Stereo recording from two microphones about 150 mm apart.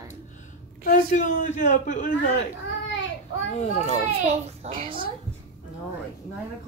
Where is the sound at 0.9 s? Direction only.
60° left (ahead or behind).